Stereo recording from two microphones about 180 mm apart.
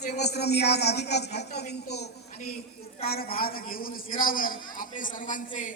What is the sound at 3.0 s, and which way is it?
A woman's voice, 55° left (ahead or behind).